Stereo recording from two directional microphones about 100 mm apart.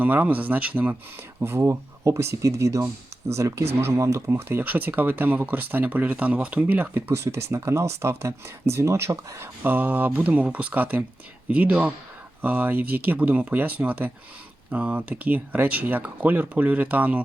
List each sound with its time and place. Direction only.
0.0 s speech: 15° right (ahead or behind)